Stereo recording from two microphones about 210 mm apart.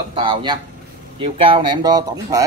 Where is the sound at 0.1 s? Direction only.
20° right (ahead or behind).